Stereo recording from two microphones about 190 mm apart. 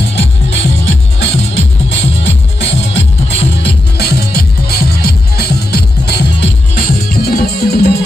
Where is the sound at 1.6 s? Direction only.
70° left (ahead or behind).